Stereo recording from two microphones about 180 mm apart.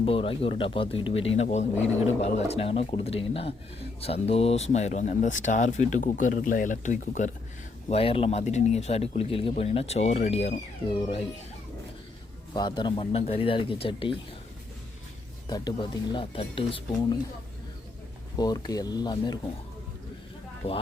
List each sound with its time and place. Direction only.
0.0 s speech: 30° left (ahead or behind)
7.9 s speech: 35° left (ahead or behind)
12.5 s speech: 25° left (ahead or behind)
15.4 s speech: 20° left (ahead or behind)
18.3 s speech: 20° left (ahead or behind)
20.6 s speech: 35° left (ahead or behind)